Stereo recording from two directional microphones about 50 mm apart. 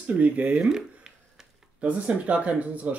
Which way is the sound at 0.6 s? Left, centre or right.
Centre.